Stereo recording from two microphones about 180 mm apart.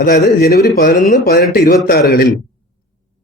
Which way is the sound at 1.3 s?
65° left (ahead or behind).